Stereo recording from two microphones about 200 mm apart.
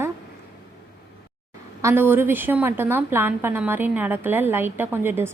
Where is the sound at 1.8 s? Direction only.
10° right (ahead or behind).